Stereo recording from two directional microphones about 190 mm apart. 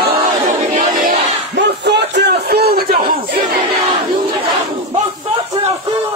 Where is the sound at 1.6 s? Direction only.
65° right (ahead or behind).